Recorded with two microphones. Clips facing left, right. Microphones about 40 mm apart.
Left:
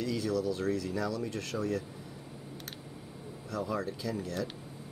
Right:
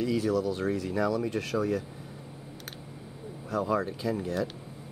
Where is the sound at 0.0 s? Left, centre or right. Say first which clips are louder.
Right 4 dB; right.